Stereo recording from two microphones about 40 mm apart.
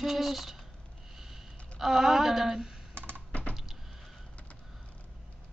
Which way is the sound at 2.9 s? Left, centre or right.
Right.